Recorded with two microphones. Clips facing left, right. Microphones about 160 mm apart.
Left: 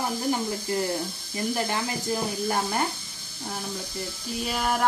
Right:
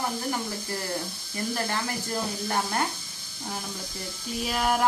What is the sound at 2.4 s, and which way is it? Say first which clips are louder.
Speech: left 1 dB; 5° left (ahead or behind).